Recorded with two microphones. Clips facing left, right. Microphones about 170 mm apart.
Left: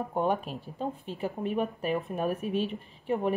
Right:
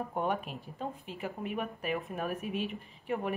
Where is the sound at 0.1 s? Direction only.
35° left (ahead or behind).